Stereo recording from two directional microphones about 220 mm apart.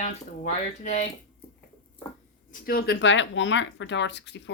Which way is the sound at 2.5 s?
40° left (ahead or behind).